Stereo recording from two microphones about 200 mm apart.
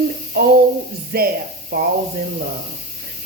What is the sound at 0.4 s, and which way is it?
A woman's voice, 55° right (ahead or behind).